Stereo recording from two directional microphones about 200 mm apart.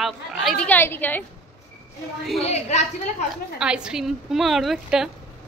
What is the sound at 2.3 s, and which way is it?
Speech, 35° left (ahead or behind).